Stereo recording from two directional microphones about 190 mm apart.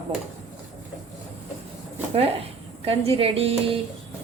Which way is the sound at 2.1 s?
30° right (ahead or behind).